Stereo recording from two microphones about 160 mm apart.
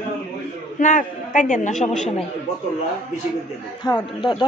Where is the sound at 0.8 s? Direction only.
50° left (ahead or behind).